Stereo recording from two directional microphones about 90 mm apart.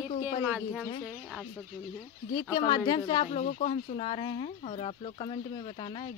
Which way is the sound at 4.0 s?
70° left (ahead or behind).